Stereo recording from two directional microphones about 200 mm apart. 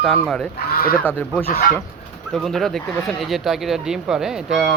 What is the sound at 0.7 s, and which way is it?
Speech, 50° left (ahead or behind).